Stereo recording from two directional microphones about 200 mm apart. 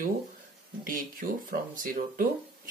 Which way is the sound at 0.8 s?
45° right (ahead or behind).